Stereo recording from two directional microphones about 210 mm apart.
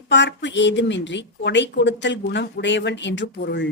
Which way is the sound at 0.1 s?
60° left (ahead or behind).